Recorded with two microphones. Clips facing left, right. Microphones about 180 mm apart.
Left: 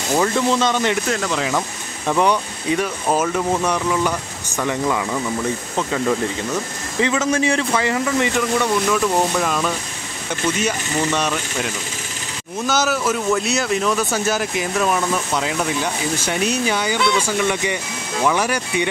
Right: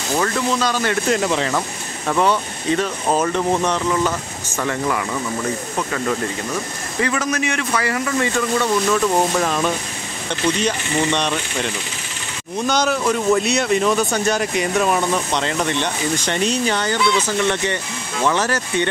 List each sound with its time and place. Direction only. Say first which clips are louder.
0.1 s a man's voice: left 2 dB; 20° left (ahead or behind)
1.3 s speech: right 1 dB; centre (ahead or behind)
2.0 s speech: even; 15° left (ahead or behind)
7.0 s a man's voice: left 3 dB; 20° left (ahead or behind)
8.9 s speech: right 1 dB; centre (ahead or behind)